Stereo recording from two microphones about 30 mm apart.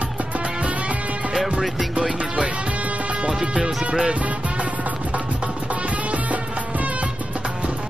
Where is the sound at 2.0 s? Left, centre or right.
Right.